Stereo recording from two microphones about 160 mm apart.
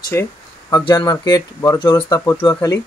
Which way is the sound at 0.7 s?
30° left (ahead or behind).